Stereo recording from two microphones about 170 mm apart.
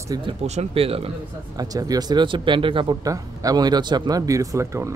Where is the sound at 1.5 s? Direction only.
20° right (ahead or behind).